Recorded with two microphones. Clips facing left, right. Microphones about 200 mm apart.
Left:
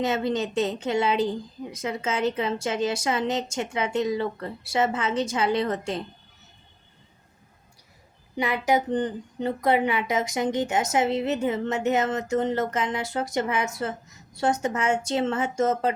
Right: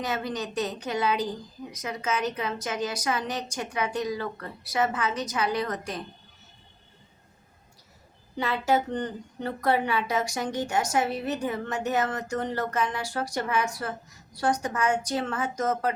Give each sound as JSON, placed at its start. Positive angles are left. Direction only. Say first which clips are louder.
{"t": 0.0, "sound": "speech", "louder": "left 6 dB", "side_deg": 25}
{"t": 8.4, "sound": "speech", "louder": "left 2 dB", "side_deg": 15}